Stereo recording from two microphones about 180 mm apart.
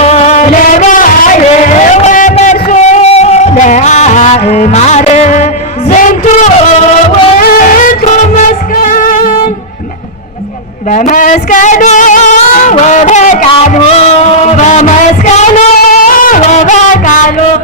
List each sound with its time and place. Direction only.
0.0 s music: 35° left (ahead or behind)
10.9 s music: 45° left (ahead or behind)